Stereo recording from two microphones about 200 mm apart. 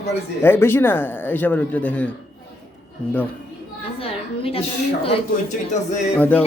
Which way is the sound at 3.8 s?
30° left (ahead or behind).